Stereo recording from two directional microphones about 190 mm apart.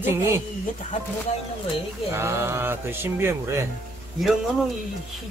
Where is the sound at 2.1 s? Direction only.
15° right (ahead or behind).